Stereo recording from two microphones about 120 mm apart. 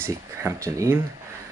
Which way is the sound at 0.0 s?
20° right (ahead or behind).